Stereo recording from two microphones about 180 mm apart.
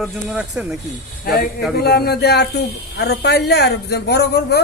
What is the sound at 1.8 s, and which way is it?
Speech, 60° left (ahead or behind).